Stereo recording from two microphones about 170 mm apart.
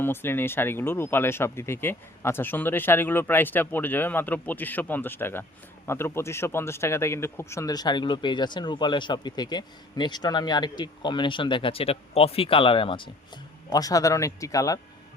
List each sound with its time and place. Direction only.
0.0 s speech: 15° left (ahead or behind)